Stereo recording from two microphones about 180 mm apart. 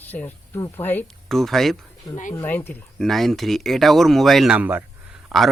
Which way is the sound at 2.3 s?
10° left (ahead or behind).